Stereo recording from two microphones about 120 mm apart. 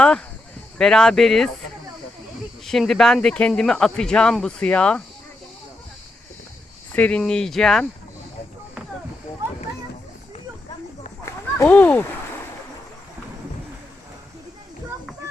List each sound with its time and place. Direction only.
0.8 s speech: 5° left (ahead or behind)
2.6 s speech: centre (ahead or behind)
6.9 s speech: 10° left (ahead or behind)
11.5 s speech: 15° left (ahead or behind)